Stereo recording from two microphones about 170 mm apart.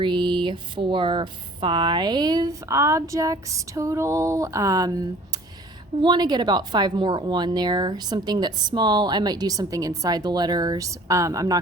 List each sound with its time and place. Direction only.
0.0 s speech: 25° right (ahead or behind)